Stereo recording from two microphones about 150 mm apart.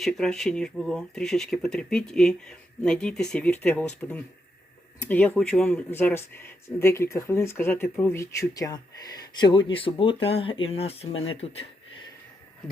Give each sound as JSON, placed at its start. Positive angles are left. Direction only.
{"t": 0.0, "sound": "speech", "side_deg": 5}